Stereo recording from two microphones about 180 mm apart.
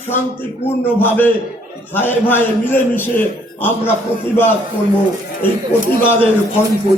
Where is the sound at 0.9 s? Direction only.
10° left (ahead or behind).